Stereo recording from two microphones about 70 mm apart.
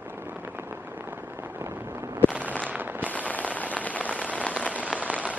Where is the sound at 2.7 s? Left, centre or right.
Right.